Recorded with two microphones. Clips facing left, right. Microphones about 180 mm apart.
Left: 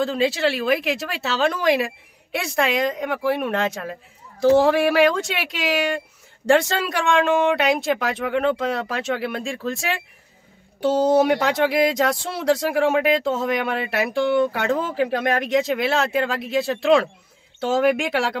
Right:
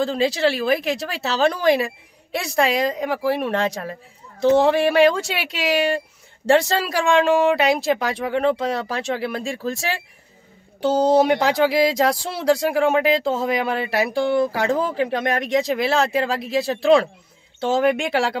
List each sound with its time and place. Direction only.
0.0 s speech: centre (ahead or behind)
4.4 s speech: 25° right (ahead or behind)
4.6 s speech: 5° left (ahead or behind)
14.1 s speech: 35° right (ahead or behind)
14.5 s speech: centre (ahead or behind)